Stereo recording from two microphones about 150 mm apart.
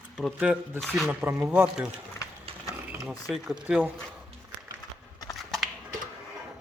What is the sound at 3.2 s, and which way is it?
Speech, 5° right (ahead or behind).